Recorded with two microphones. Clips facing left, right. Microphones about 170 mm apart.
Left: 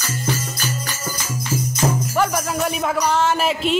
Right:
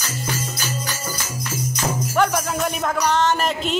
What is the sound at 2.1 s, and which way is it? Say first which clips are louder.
Music: even; centre (ahead or behind).